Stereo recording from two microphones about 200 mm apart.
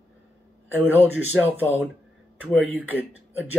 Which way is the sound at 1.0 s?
10° right (ahead or behind).